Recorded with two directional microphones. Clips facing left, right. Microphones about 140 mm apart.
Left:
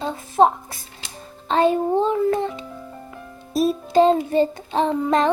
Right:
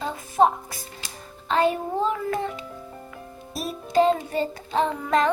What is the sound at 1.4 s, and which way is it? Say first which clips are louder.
Music: left 4 dB; 25° left (ahead or behind).